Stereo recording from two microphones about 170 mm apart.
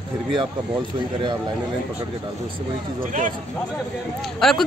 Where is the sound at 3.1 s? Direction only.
50° right (ahead or behind).